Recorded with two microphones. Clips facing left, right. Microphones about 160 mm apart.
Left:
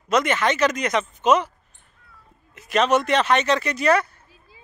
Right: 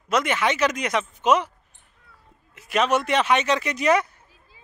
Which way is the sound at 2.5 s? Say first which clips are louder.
Left 2 dB; 10° right (ahead or behind).